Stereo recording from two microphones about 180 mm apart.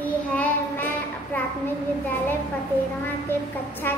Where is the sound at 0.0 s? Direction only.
10° left (ahead or behind).